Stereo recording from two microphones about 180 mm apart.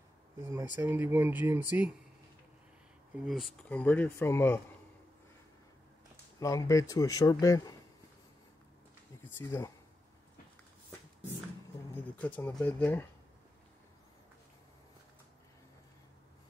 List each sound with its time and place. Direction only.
0.5 s speech: 10° right (ahead or behind)
3.3 s speech: centre (ahead or behind)
6.4 s speech: 20° left (ahead or behind)
9.4 s speech: 15° left (ahead or behind)
11.9 s speech: 10° left (ahead or behind)